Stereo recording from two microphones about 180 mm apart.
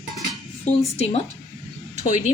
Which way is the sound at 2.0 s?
40° left (ahead or behind).